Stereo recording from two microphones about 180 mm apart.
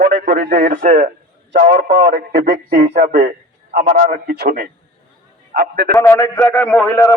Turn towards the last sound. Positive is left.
turn(degrees=15)  # may be behind; listen again after turning